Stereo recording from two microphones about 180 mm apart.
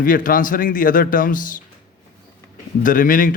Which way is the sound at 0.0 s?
50° left (ahead or behind).